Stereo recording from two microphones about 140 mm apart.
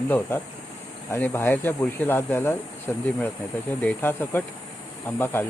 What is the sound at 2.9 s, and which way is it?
Speech, 5° left (ahead or behind).